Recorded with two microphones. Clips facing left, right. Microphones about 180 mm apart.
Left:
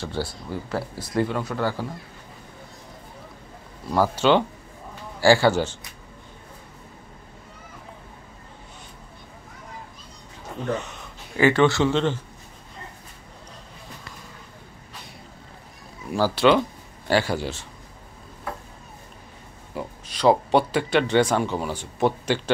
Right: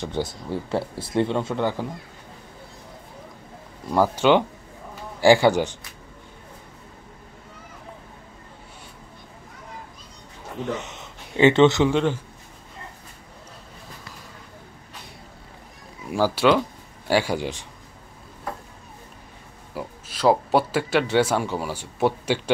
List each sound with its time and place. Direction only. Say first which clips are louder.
0.0 s speech: right 2 dB; 20° right (ahead or behind)
3.9 s speech: right 1 dB; 15° right (ahead or behind)
10.6 s speech: left 1 dB; 20° right (ahead or behind)
16.1 s speech: even; 10° right (ahead or behind)
19.7 s speech: left 1 dB; 5° right (ahead or behind)